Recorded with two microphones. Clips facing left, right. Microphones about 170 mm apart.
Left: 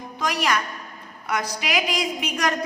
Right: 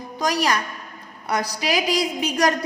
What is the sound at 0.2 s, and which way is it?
A woman's voice, 35° right (ahead or behind).